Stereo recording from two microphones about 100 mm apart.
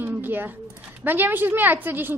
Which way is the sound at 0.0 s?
20° right (ahead or behind).